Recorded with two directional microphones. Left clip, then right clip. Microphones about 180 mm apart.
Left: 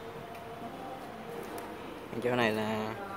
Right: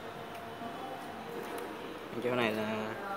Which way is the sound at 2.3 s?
20° left (ahead or behind).